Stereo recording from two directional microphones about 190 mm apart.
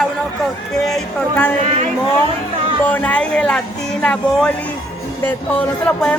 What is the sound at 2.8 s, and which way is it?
Speech, 10° left (ahead or behind).